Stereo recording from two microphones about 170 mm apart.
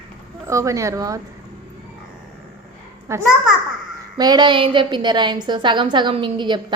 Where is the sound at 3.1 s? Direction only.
15° right (ahead or behind).